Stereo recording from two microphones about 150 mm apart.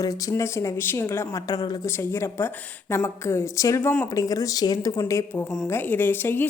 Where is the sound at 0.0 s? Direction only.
25° left (ahead or behind).